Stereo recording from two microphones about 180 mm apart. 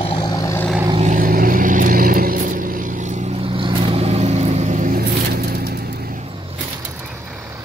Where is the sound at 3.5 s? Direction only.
30° right (ahead or behind).